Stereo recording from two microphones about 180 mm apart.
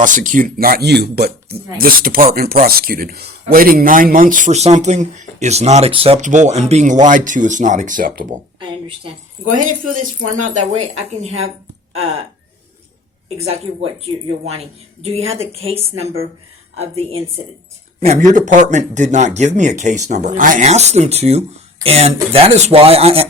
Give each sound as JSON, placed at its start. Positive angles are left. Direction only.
{"t": 0.0, "sound": "speech", "side_deg": -45}
{"t": 9.4, "sound": "speech", "side_deg": -45}
{"t": 14.0, "sound": "speech", "side_deg": -35}